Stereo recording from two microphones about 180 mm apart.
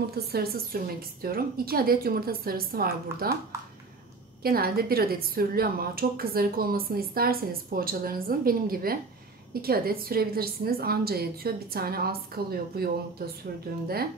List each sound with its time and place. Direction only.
0.1 s speech: 60° right (ahead or behind)
4.4 s speech: 55° right (ahead or behind)